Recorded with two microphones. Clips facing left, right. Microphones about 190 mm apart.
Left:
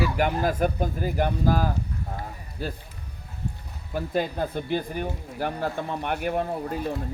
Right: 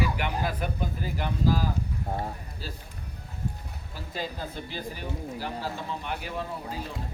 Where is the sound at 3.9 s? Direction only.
55° left (ahead or behind).